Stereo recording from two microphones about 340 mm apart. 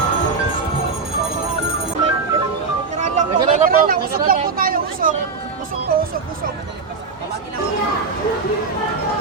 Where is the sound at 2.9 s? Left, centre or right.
Right.